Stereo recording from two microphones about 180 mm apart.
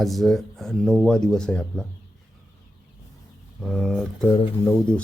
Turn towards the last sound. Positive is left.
turn(degrees=5)  # may be behind; listen again after turning